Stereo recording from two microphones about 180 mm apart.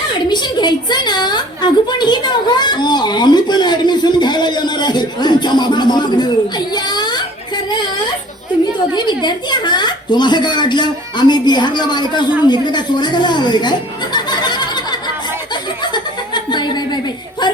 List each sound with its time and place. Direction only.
0.3 s a woman's voice: 25° left (ahead or behind)
6.7 s a sound: 25° left (ahead or behind)
9.0 s a woman's voice: 25° left (ahead or behind)
15.8 s chuckle: 25° left (ahead or behind)